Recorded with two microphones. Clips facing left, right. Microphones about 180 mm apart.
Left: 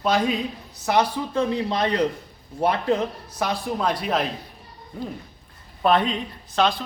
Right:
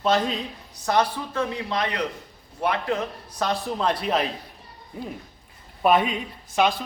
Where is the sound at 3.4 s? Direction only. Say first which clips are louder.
Even; 5° left (ahead or behind).